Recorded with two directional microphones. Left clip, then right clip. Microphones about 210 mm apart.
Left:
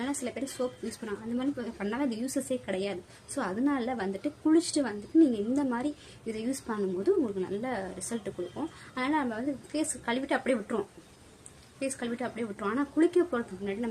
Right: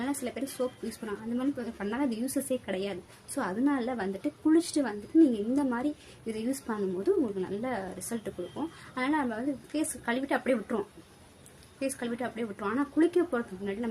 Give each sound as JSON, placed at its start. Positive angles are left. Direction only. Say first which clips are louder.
{"t": 0.0, "sound": "speech", "louder": "even", "side_deg": -5}